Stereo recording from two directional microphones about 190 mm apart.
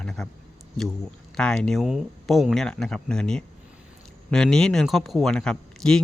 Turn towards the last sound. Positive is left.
turn(degrees=5)  # may be behind; listen again after turning